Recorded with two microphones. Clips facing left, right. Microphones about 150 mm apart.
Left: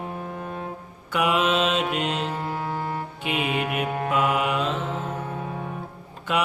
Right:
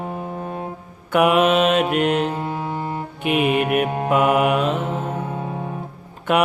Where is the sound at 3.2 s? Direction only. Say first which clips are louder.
Right 8 dB; 55° right (ahead or behind).